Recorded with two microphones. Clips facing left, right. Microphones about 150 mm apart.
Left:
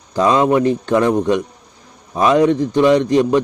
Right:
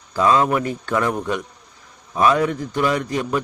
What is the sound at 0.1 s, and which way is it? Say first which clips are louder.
A man's voice: left 4 dB; 20° left (ahead or behind).